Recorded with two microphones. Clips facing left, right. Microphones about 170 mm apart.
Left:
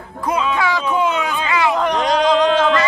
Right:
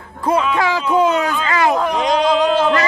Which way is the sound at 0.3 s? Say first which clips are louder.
Right 2 dB; 35° right (ahead or behind).